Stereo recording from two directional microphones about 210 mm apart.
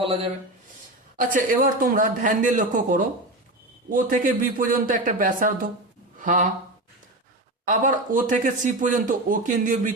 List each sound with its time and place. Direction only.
0.0 s speech: 25° right (ahead or behind)
1.2 s speech: 40° right (ahead or behind)
7.6 s speech: 40° right (ahead or behind)